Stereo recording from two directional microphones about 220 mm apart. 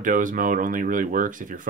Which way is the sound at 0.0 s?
35° right (ahead or behind).